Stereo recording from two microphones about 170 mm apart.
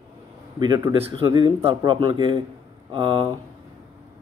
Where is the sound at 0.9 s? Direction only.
25° right (ahead or behind).